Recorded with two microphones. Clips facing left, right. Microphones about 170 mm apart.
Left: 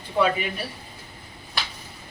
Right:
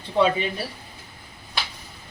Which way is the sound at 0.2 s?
25° right (ahead or behind).